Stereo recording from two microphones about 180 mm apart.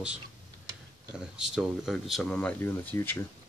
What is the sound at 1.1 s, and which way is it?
Speech, 5° right (ahead or behind).